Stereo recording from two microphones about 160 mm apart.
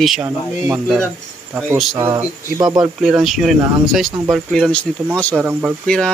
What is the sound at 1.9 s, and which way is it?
Speech, 20° right (ahead or behind).